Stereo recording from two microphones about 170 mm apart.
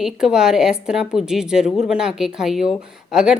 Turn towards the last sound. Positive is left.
turn(degrees=-5)  # may be behind; listen again after turning